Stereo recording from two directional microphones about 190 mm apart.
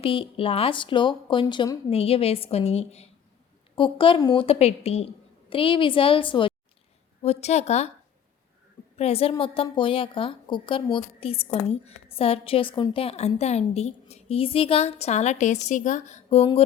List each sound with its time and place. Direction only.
0.0 s a woman's voice: 30° left (ahead or behind)
9.0 s speech: 30° left (ahead or behind)